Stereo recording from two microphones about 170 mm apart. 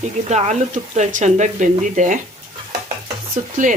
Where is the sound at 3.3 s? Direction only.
50° right (ahead or behind).